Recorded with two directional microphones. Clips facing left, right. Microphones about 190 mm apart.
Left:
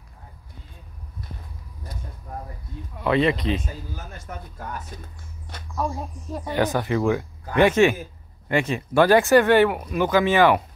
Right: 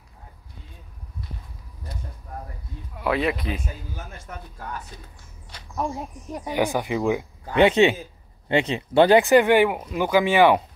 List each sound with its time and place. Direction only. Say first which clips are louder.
3.0 s speech: left 3 dB; 5° right (ahead or behind)
5.8 s speech: even; 20° right (ahead or behind)